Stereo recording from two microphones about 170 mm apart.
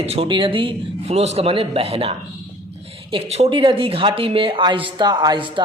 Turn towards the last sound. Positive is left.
turn(degrees=-30)  # may be behind; listen again after turning